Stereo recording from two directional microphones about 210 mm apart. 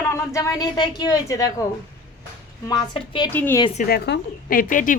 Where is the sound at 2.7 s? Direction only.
20° left (ahead or behind).